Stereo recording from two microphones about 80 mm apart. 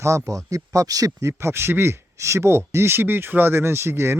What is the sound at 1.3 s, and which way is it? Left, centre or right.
Speech, right.